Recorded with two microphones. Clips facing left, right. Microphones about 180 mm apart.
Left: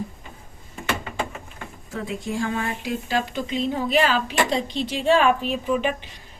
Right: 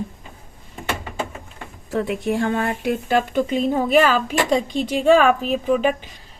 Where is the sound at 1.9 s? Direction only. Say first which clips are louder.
Right 7 dB; 65° right (ahead or behind).